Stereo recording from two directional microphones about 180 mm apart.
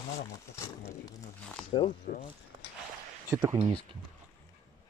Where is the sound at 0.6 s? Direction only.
15° left (ahead or behind).